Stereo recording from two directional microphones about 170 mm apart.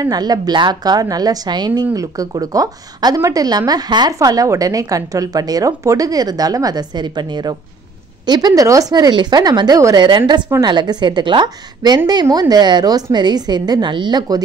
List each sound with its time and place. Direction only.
0.0 s speech: 20° right (ahead or behind)